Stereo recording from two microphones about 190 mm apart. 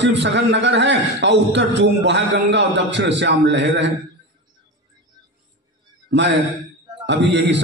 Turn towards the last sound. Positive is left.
turn(degrees=-65)  # may be behind; listen again after turning